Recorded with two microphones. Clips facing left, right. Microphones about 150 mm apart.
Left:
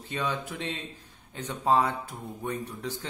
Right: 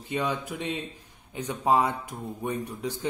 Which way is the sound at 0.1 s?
15° right (ahead or behind).